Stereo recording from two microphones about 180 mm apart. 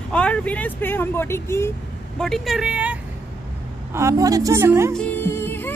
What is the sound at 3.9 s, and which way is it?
A woman's voice, 15° right (ahead or behind).